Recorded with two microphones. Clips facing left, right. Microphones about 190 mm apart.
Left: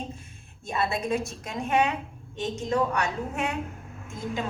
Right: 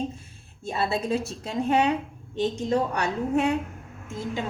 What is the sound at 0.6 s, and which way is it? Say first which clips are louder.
A woman's voice: right 1 dB; 30° right (ahead or behind).